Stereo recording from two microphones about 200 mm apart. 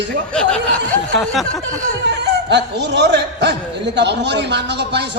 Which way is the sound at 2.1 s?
60° right (ahead or behind).